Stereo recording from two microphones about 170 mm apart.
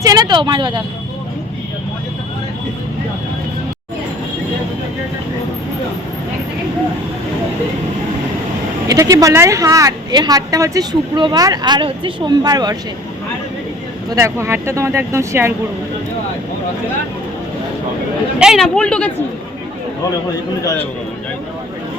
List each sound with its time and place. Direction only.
0.0 s a woman's voice: 25° right (ahead or behind)
8.9 s a woman's voice: 20° right (ahead or behind)
14.1 s speech: 15° right (ahead or behind)
18.3 s speech: 5° right (ahead or behind)